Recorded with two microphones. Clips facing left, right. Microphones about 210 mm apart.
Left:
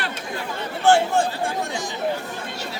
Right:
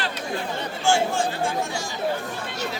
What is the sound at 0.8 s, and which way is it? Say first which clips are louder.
Speech: left 5 dB; 60° left (ahead or behind).